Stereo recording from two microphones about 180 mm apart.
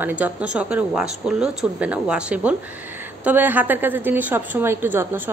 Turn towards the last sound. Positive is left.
turn(degrees=-10)  # may be behind; listen again after turning